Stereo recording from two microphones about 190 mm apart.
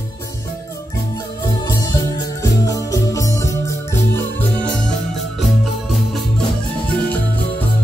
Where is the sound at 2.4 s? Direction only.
15° left (ahead or behind).